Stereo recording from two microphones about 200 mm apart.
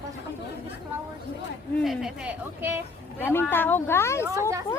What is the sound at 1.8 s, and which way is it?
Speech, centre (ahead or behind).